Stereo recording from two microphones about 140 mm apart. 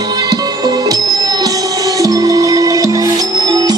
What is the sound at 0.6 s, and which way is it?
Music, 25° right (ahead or behind).